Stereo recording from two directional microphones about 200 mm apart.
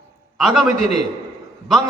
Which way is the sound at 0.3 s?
Centre (ahead or behind).